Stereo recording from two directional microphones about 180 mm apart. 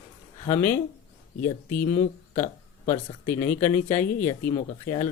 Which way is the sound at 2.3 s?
40° left (ahead or behind).